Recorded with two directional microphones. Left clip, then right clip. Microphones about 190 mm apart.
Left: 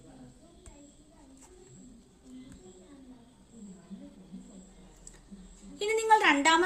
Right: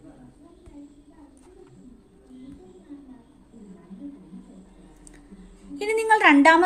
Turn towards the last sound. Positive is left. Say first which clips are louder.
# right 7 dB
turn(degrees=-35)  # may be behind; listen again after turning